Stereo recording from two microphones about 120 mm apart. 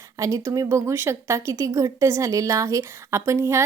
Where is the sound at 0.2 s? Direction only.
30° right (ahead or behind).